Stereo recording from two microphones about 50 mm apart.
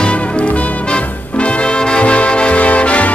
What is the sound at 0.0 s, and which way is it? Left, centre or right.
Music, left.